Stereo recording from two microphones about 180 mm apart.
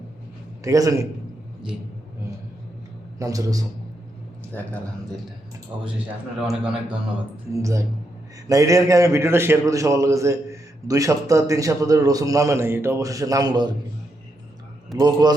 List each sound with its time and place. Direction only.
0.6 s a man's voice: 20° right (ahead or behind)
3.2 s a man's voice: 20° right (ahead or behind)
4.5 s speech: 10° left (ahead or behind)
6.3 s speech: 5° right (ahead or behind)
7.6 s a man's voice: 15° right (ahead or behind)
14.9 s a man's voice: 20° right (ahead or behind)